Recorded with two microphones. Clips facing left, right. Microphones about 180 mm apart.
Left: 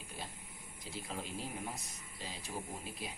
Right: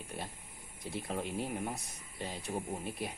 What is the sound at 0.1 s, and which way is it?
Speech, 60° right (ahead or behind).